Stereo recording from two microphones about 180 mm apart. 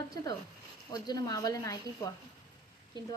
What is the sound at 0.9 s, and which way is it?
A woman's voice, 20° left (ahead or behind).